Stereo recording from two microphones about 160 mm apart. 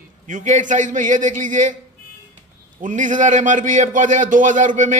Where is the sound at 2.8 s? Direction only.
55° right (ahead or behind).